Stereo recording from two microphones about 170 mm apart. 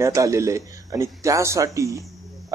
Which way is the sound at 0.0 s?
20° right (ahead or behind).